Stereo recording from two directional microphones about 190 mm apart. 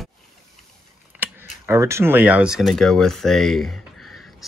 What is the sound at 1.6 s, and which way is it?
Speech, 15° right (ahead or behind).